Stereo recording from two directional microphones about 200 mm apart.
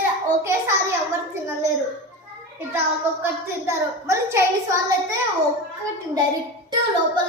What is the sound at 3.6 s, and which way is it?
Child singing, 15° right (ahead or behind).